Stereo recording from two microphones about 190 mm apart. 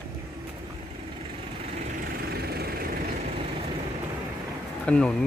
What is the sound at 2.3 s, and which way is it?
Vehicle, 55° right (ahead or behind).